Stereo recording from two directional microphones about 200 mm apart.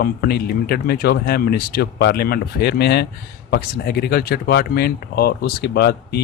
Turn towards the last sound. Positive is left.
turn(degrees=55)  # may be behind; listen again after turning